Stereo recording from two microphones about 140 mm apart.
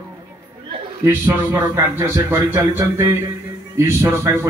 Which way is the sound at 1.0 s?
15° right (ahead or behind).